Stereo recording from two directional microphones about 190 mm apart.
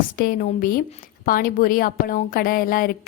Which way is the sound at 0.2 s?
50° left (ahead or behind).